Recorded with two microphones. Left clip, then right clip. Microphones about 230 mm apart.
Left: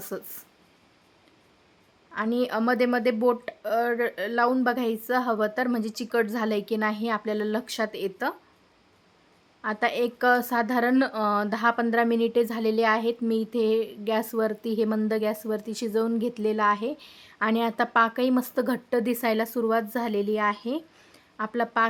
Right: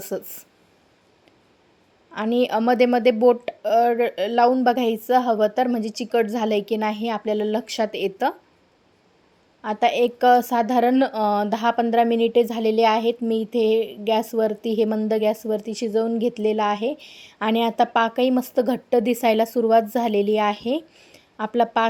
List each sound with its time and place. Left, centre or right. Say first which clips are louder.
0.0 s a woman's voice: right 6 dB; centre
2.1 s a woman's voice: right 5 dB; centre
9.6 s a woman's voice: right 6 dB; centre
13.5 s a woman's voice: right 6 dB; left
13.7 s a woman's voice: right 5 dB; centre